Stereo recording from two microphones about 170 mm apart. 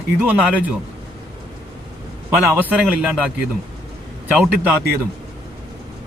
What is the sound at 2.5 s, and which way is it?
Speech, 10° right (ahead or behind).